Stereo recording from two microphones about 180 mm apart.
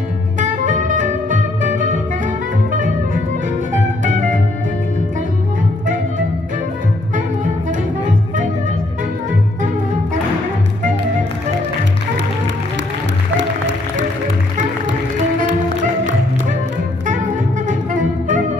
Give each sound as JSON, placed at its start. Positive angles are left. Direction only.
{"t": 0.4, "sound": "music", "side_deg": -45}
{"t": 4.0, "sound": "music", "side_deg": -45}
{"t": 13.4, "sound": "music", "side_deg": -90}
{"t": 17.6, "sound": "music", "side_deg": -45}